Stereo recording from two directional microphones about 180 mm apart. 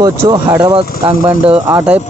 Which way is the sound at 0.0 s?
20° right (ahead or behind).